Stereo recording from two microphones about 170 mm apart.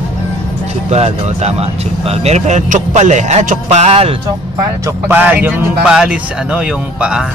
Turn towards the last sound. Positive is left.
turn(degrees=-5)  # may be behind; listen again after turning